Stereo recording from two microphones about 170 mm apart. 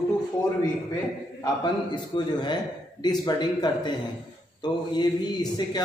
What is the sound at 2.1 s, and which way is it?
A man's voice, 25° left (ahead or behind).